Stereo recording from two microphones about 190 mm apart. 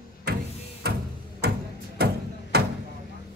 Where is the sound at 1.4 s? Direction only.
60° right (ahead or behind).